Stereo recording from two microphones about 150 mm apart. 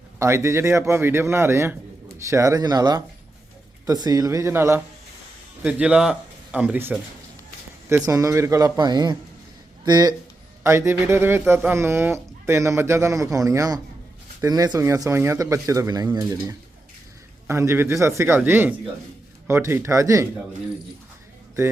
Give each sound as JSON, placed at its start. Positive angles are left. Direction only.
{"t": 0.2, "sound": "speech", "side_deg": -20}
{"t": 8.0, "sound": "speech", "side_deg": -25}